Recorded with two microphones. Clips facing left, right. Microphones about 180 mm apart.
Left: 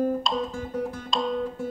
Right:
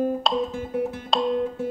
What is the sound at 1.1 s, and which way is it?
Music, 65° right (ahead or behind).